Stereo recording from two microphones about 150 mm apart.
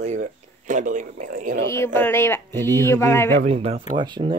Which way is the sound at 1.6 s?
20° left (ahead or behind).